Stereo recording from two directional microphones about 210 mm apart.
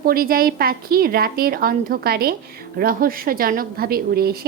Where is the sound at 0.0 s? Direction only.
45° right (ahead or behind).